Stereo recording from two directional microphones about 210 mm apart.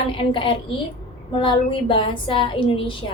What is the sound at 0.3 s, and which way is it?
A woman's voice, 25° left (ahead or behind).